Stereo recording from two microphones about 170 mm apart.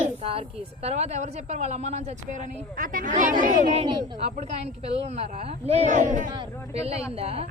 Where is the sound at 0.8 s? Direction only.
40° right (ahead or behind).